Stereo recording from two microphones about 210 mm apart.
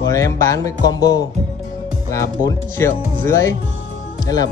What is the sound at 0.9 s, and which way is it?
Speech, 15° left (ahead or behind).